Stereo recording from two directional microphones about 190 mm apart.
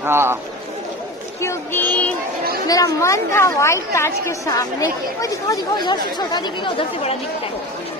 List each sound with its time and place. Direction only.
0.0 s speech: 10° right (ahead or behind)
1.4 s a sound: 15° left (ahead or behind)
2.7 s a woman's voice: 15° left (ahead or behind)